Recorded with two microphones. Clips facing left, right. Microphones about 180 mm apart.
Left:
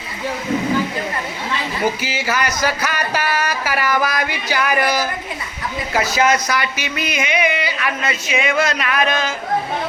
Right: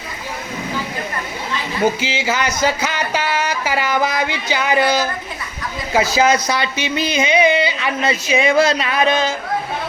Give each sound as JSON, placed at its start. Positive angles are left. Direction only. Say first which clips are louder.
{"t": 1.8, "sound": "speech", "louder": "right 5 dB", "side_deg": -20}